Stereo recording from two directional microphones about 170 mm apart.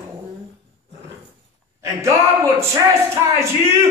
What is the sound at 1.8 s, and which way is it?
Speech, 15° right (ahead or behind).